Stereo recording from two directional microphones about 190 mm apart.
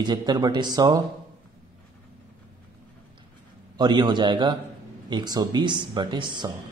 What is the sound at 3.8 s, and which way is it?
A man's voice, 25° right (ahead or behind).